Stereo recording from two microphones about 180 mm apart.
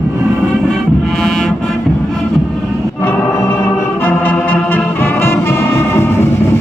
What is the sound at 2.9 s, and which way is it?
Music, 15° left (ahead or behind).